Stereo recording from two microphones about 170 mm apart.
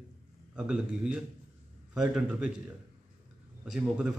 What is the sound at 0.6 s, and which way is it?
A man's voice, 5° right (ahead or behind).